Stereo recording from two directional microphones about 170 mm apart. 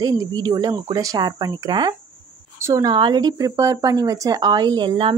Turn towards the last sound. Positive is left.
turn(degrees=-30)  # may be behind; listen again after turning